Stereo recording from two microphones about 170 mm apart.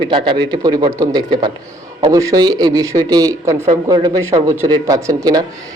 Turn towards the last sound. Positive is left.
turn(degrees=-20)  # may be behind; listen again after turning